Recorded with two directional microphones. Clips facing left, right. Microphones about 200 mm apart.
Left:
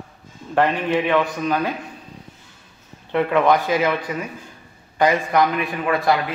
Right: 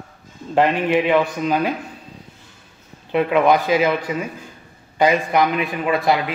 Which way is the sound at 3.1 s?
15° right (ahead or behind).